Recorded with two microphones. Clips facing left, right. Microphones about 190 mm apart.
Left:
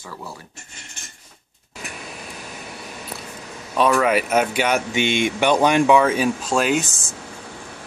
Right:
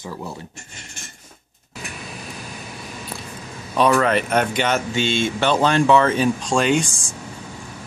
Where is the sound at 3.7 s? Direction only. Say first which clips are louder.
Even; 5° left (ahead or behind).